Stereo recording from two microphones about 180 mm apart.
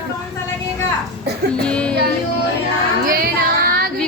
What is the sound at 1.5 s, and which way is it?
Speech, 5° left (ahead or behind).